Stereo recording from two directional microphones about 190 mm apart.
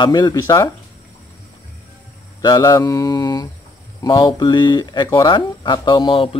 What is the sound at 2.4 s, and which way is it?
Speech, 20° left (ahead or behind).